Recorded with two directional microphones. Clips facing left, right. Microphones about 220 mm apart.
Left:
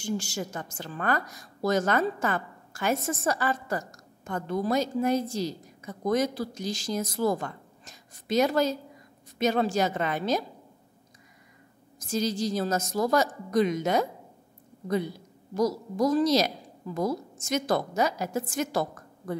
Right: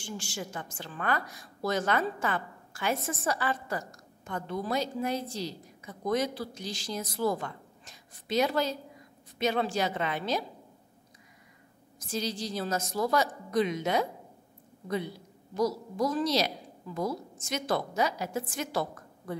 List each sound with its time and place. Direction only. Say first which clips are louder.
0.0 s a woman's voice: left 7 dB; 40° left (ahead or behind)
12.0 s a woman's voice: left 6 dB; 45° left (ahead or behind)
15.5 s a woman's voice: left 3 dB; 40° left (ahead or behind)